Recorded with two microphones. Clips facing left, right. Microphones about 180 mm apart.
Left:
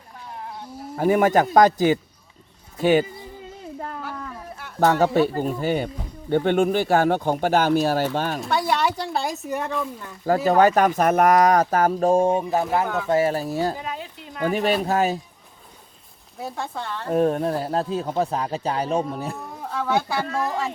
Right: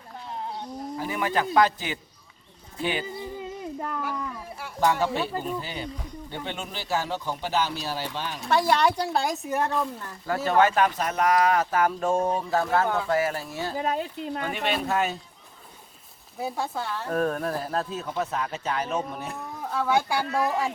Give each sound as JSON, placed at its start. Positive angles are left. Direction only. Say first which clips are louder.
{"t": 0.6, "sound": "a sound", "louder": "right 2 dB", "side_deg": 5}
{"t": 0.9, "sound": "speech", "louder": "left 10 dB", "side_deg": 50}
{"t": 4.8, "sound": "speech", "louder": "left 6 dB", "side_deg": 45}
{"t": 8.4, "sound": "speech", "louder": "right 4 dB", "side_deg": 0}
{"t": 10.2, "sound": "speech", "louder": "left 5 dB", "side_deg": 35}
{"t": 12.4, "sound": "speech", "louder": "left 2 dB", "side_deg": 20}
{"t": 16.4, "sound": "speech", "louder": "right 1 dB", "side_deg": -5}
{"t": 17.1, "sound": "speech", "louder": "left 7 dB", "side_deg": 25}
{"t": 19.7, "sound": "speech", "louder": "left 1 dB", "side_deg": -10}